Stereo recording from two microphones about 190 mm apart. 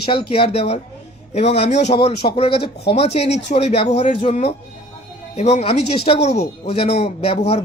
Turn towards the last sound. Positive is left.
turn(degrees=30)  # may be behind; listen again after turning